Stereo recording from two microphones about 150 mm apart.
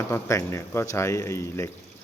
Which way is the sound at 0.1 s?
20° left (ahead or behind).